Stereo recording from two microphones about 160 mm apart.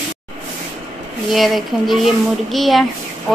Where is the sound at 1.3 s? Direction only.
Centre (ahead or behind).